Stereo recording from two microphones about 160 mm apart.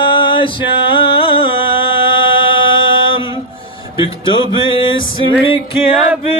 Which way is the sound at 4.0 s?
30° left (ahead or behind).